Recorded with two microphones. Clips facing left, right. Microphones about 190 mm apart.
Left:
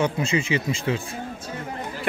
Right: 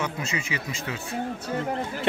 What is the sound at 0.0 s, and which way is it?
Speech, 30° left (ahead or behind).